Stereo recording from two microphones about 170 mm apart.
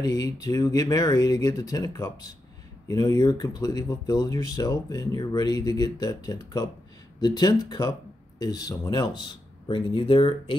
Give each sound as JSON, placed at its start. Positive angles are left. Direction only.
{"t": 0.0, "sound": "speech", "side_deg": 20}